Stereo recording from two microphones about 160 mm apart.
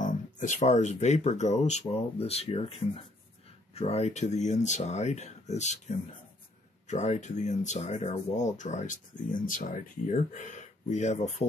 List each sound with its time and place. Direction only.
0.0 s speech: 50° left (ahead or behind)